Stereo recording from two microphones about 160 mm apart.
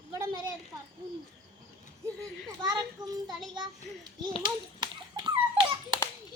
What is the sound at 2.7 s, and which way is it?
Speech, 25° right (ahead or behind).